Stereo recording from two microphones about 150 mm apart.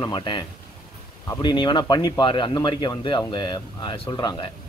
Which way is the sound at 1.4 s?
30° left (ahead or behind).